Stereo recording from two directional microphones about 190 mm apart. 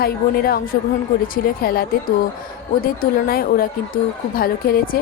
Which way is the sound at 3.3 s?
50° left (ahead or behind).